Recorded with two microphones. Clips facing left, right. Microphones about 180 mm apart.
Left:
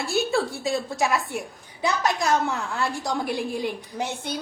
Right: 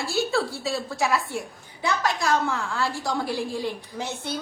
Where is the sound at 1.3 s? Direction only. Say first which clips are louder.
Even; 20° left (ahead or behind).